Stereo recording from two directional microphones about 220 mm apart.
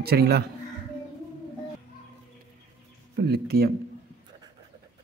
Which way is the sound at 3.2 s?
45° right (ahead or behind).